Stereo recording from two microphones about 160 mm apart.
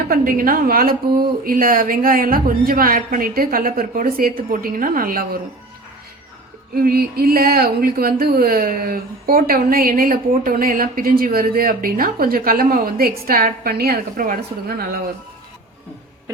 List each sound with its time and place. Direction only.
0.1 s speech: 65° right (ahead or behind)
6.7 s speech: 70° right (ahead or behind)